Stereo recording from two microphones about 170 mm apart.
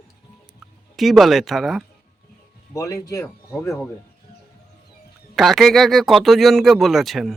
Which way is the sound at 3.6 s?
Centre (ahead or behind).